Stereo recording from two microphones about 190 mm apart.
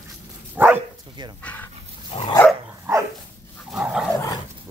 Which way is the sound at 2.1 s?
30° left (ahead or behind).